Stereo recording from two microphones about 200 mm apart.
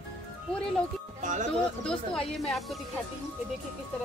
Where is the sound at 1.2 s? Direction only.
40° right (ahead or behind).